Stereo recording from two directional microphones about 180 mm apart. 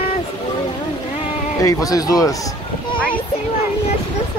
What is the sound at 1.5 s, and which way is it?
Speech, 20° left (ahead or behind).